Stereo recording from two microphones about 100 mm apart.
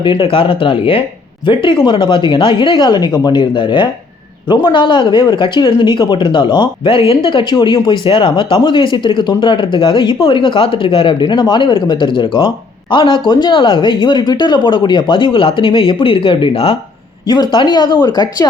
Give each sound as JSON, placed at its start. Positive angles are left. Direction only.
{"t": 0.2, "sound": "speech", "side_deg": 65}
{"t": 11.3, "sound": "speech", "side_deg": 50}
{"t": 17.2, "sound": "speech", "side_deg": 45}